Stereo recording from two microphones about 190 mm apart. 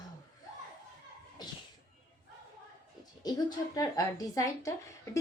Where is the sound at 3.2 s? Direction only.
20° left (ahead or behind).